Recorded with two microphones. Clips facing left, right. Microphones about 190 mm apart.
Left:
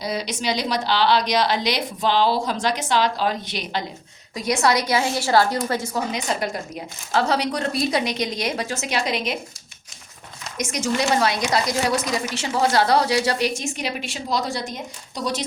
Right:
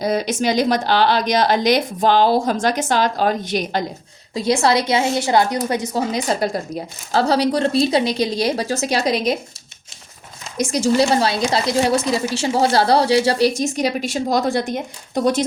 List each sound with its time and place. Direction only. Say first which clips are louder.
0.0 s speech: right 7 dB; 50° right (ahead or behind)
4.4 s a woman's voice: right 4 dB; 30° right (ahead or behind)
6.1 s a woman's voice: right 5 dB; 35° right (ahead or behind)
10.6 s a woman's voice: right 7 dB; 30° right (ahead or behind); by 15.4 s 55° right (ahead or behind)